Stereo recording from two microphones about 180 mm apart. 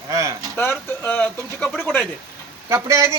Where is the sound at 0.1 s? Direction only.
15° right (ahead or behind).